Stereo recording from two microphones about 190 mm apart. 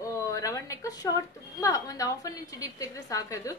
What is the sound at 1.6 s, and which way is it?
A woman's voice, 20° left (ahead or behind).